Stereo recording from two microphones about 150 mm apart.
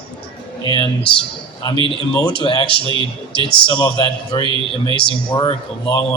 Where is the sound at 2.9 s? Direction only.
35° right (ahead or behind).